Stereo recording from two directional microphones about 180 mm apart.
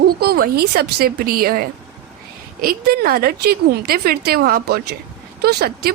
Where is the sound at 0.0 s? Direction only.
60° right (ahead or behind).